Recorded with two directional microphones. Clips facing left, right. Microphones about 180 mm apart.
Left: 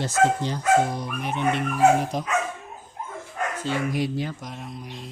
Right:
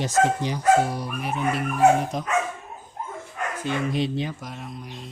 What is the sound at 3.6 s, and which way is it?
Speech, 20° right (ahead or behind).